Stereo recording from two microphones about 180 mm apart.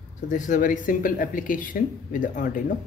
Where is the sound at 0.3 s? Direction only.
45° left (ahead or behind).